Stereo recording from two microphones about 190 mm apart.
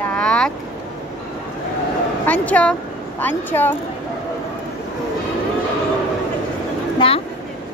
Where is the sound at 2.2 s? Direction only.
10° left (ahead or behind).